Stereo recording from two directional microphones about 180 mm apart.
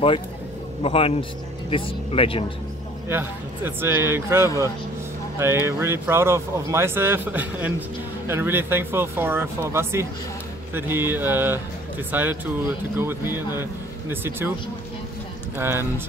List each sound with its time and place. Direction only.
0.8 s a man's voice: 30° left (ahead or behind)
3.1 s speech: 10° right (ahead or behind)
5.7 s speech: 15° right (ahead or behind)
15.5 s speech: 15° right (ahead or behind)